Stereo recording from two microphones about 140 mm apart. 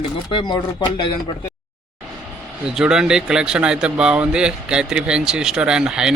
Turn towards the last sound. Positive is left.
turn(degrees=-5)  # may be behind; listen again after turning